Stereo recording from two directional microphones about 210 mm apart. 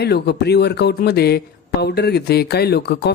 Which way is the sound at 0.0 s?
50° left (ahead or behind).